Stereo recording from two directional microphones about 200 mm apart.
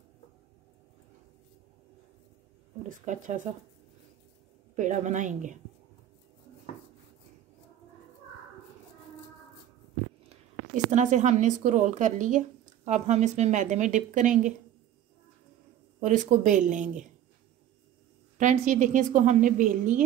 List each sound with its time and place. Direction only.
2.9 s a woman's voice: 40° right (ahead or behind)
4.7 s a woman's voice: 40° right (ahead or behind)
10.3 s a woman's voice: 35° right (ahead or behind)
16.0 s a woman's voice: 40° right (ahead or behind)
18.4 s a woman's voice: 40° right (ahead or behind)